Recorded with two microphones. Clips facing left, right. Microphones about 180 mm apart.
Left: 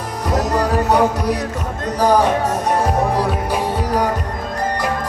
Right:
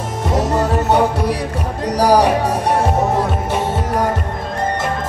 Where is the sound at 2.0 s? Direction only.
35° right (ahead or behind).